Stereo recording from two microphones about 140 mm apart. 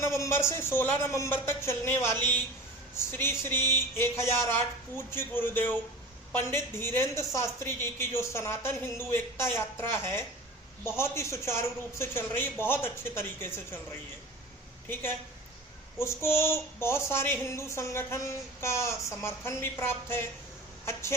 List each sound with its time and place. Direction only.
0.0 s a woman's voice: 20° left (ahead or behind)
16.0 s speech: 20° left (ahead or behind)